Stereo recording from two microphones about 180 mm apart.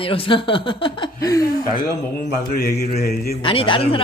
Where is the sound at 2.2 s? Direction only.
60° left (ahead or behind).